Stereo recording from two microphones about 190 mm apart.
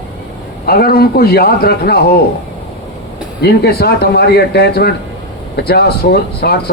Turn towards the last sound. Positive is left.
turn(degrees=55)  # may be behind; listen again after turning